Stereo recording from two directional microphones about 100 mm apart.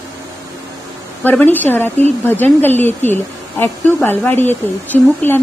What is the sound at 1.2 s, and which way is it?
A woman's voice, 20° left (ahead or behind).